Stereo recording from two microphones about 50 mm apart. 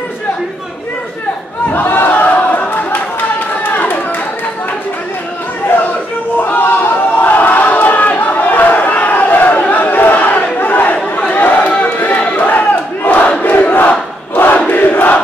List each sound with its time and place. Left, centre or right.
1.7 s crowd: left
3.7 s a sound: left
5.7 s chatter: left
11.8 s battle cry: left
14.7 s crowd: left